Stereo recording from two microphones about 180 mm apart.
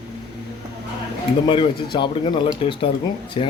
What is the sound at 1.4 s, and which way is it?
Speech, 25° left (ahead or behind).